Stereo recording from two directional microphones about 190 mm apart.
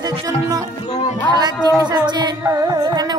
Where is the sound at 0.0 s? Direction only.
20° right (ahead or behind).